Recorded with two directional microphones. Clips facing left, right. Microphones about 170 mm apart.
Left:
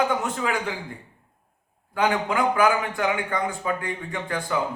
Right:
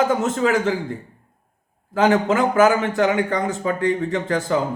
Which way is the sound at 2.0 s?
45° right (ahead or behind).